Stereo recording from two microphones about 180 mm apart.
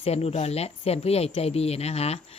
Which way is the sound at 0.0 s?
35° left (ahead or behind).